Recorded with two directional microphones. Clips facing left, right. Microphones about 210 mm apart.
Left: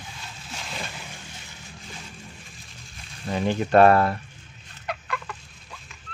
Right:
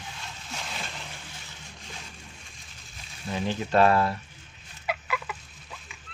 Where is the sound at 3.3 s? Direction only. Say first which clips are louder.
Left 5 dB; 55° left (ahead or behind).